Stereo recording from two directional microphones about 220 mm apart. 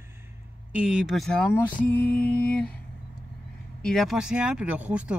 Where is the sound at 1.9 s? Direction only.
50° left (ahead or behind).